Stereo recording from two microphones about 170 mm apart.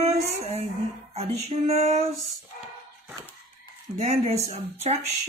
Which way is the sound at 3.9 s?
40° right (ahead or behind).